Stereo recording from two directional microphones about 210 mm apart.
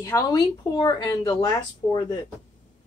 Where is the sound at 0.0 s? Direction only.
15° left (ahead or behind).